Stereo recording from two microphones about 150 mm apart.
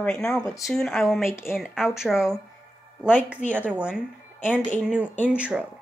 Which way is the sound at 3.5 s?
10° right (ahead or behind).